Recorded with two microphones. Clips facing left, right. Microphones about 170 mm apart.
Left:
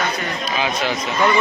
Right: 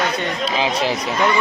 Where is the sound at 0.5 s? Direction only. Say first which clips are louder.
Right 1 dB; 30° right (ahead or behind).